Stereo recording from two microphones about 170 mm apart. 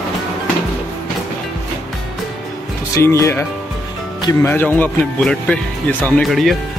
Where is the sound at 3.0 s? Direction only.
15° left (ahead or behind); by 6.6 s centre (ahead or behind).